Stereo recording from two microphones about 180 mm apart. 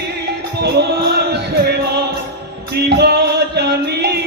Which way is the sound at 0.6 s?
65° right (ahead or behind).